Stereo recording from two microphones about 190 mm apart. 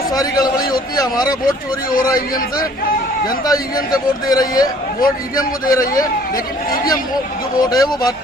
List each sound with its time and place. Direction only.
0.1 s a man's voice: 20° left (ahead or behind)
1.5 s speech: 45° left (ahead or behind)
2.1 s a man's voice: 20° left (ahead or behind)
5.6 s speech: 50° left (ahead or behind)
7.6 s a man's voice: 20° left (ahead or behind)